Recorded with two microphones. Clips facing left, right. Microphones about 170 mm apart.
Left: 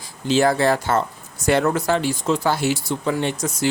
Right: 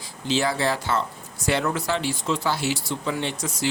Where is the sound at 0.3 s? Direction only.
50° left (ahead or behind).